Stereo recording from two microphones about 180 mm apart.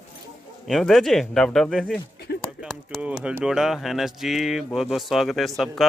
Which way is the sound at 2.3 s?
65° left (ahead or behind).